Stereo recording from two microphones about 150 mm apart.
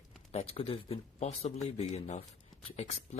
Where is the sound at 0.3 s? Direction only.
40° left (ahead or behind).